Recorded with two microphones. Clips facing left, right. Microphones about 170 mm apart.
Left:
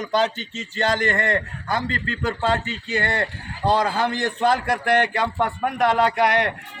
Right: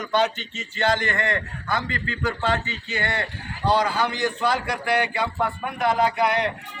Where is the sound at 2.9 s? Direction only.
40° left (ahead or behind).